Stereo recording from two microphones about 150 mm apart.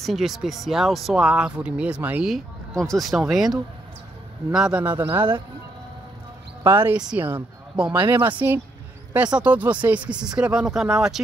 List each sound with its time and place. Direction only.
0.0 s speech: centre (ahead or behind)
6.6 s speech: 15° right (ahead or behind)